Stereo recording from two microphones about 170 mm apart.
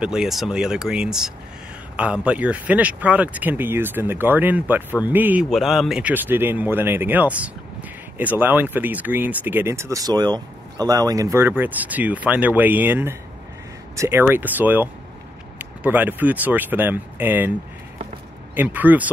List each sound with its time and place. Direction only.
0.0 s speech: 5° right (ahead or behind)
18.5 s speech: 10° right (ahead or behind)